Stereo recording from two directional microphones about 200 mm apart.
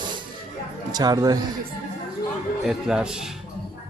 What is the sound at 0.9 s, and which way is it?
Speech, 20° right (ahead or behind).